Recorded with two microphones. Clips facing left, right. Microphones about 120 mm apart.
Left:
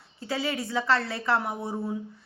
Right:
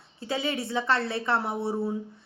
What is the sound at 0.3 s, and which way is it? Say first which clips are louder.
A woman's voice: right 1 dB; 25° right (ahead or behind).